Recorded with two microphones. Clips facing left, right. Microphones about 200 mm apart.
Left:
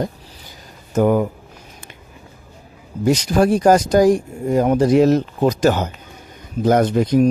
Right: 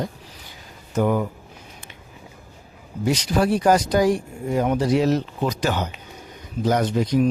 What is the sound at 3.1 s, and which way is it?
Speech, 45° left (ahead or behind).